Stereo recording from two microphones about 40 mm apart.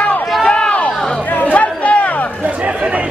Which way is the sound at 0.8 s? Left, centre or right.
Left.